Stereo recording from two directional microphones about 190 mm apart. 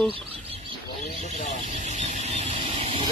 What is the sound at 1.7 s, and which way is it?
Vehicle, 35° right (ahead or behind).